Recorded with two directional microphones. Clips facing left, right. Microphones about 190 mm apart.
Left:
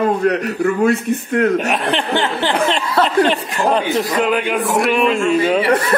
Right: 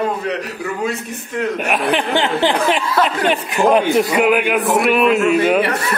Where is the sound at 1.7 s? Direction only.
5° right (ahead or behind).